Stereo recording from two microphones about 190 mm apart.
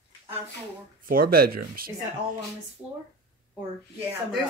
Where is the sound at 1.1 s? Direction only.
50° right (ahead or behind).